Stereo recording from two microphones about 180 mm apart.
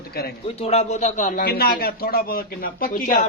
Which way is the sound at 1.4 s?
60° left (ahead or behind).